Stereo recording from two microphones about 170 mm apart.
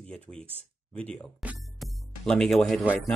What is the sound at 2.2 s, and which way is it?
Speech, 5° left (ahead or behind).